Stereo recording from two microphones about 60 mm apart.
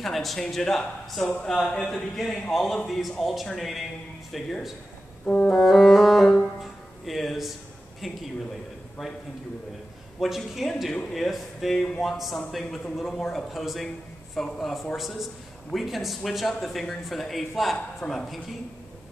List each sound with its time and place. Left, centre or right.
0.0 s a man's voice: centre
5.2 s a man's voice: centre
5.6 s speech: centre
10.2 s a man's voice: centre